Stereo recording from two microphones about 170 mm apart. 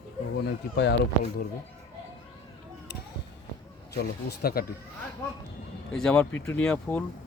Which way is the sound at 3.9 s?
70° left (ahead or behind).